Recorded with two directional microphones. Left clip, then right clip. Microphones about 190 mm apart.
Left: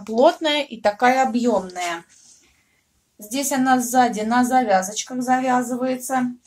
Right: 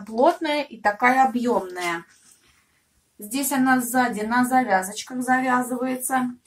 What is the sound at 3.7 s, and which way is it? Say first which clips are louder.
A woman's voice: left 5 dB; 40° left (ahead or behind).